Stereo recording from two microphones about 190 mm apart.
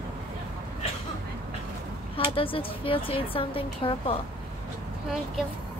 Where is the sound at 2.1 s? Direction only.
30° left (ahead or behind).